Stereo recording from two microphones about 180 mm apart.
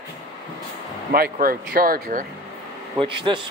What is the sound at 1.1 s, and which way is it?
Speech, 55° right (ahead or behind).